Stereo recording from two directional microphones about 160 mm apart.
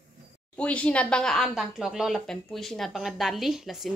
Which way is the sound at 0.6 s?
10° left (ahead or behind).